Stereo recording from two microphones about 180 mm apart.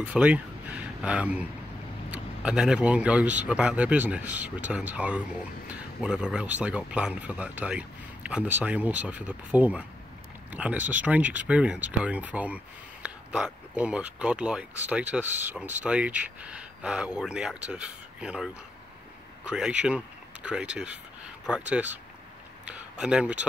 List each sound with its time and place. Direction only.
0.1 s speech: 10° right (ahead or behind)